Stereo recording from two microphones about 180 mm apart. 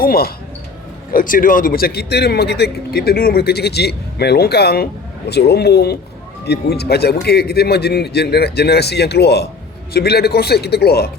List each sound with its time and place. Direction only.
0.0 s a man's voice: 55° left (ahead or behind)